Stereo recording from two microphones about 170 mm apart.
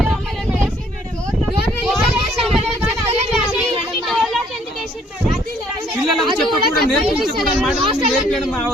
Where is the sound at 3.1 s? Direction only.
35° right (ahead or behind).